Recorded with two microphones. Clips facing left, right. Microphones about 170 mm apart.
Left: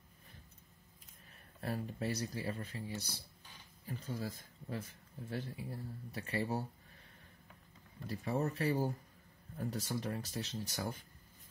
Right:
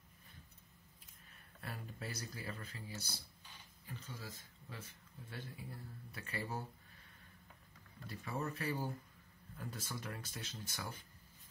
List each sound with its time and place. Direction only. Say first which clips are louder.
1.6 s speech: left 9 dB; 35° left (ahead or behind)
5.3 s speech: left 7 dB; 35° left (ahead or behind)
8.1 s speech: left 6 dB; 40° left (ahead or behind)